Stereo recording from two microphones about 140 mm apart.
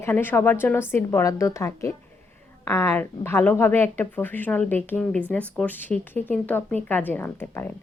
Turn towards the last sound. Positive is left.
turn(degrees=15)  # may be behind; listen again after turning